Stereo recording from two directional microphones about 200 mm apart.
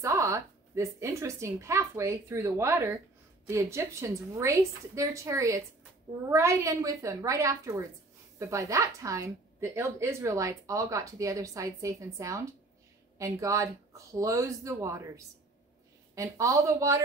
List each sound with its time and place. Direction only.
0.0 s a woman's voice: 15° right (ahead or behind)